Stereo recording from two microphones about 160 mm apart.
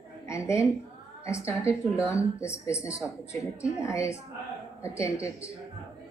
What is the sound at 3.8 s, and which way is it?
Speech, 20° left (ahead or behind).